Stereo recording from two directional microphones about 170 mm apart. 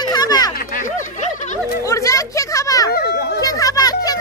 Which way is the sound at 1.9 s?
20° left (ahead or behind).